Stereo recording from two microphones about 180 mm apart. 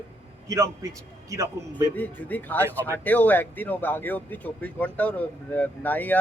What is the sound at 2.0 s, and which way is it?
Speech, 10° left (ahead or behind).